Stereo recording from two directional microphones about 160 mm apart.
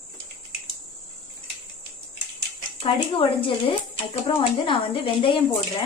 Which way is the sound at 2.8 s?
35° left (ahead or behind).